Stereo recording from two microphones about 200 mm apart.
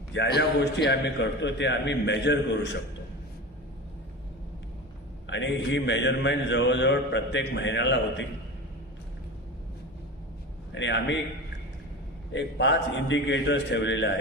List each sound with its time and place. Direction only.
0.1 s a man's voice: 60° left (ahead or behind)
5.2 s a man's voice: 65° left (ahead or behind)
10.8 s a man's voice: 60° left (ahead or behind)
12.3 s a man's voice: 60° left (ahead or behind)